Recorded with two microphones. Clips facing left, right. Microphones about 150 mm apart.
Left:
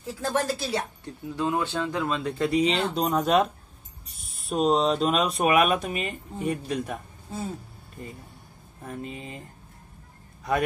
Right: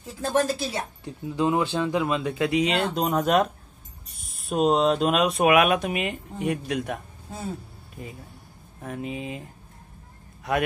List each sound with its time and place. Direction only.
0.2 s speech: 15° right (ahead or behind)
5.9 s speech: 75° right (ahead or behind)
6.5 s speech: centre (ahead or behind)
9.0 s speech: 10° right (ahead or behind)